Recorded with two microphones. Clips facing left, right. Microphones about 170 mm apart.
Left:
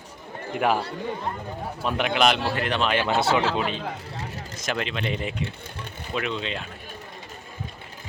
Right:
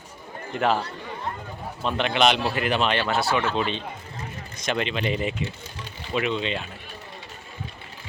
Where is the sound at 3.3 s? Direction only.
90° left.